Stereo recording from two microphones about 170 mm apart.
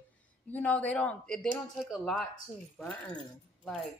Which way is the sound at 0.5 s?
10° left (ahead or behind).